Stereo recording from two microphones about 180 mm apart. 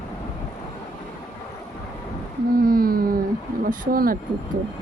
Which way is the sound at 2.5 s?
55° right (ahead or behind).